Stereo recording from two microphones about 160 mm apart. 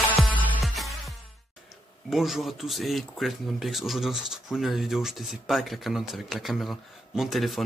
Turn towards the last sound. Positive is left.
turn(degrees=0)  # may be behind; listen again after turning